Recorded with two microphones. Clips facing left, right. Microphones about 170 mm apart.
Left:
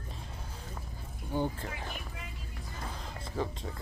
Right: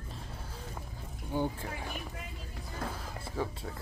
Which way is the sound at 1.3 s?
10° right (ahead or behind).